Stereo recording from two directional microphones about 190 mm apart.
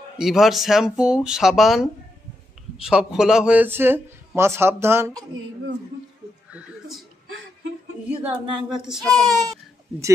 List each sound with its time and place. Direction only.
0.2 s speech: centre (ahead or behind)
6.5 s a sound: centre (ahead or behind)
8.1 s speech: 5° right (ahead or behind)
9.1 s speech: 20° right (ahead or behind)